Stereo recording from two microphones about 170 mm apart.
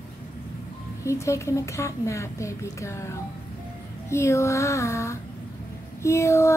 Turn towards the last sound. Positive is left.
turn(degrees=15)  # may be behind; listen again after turning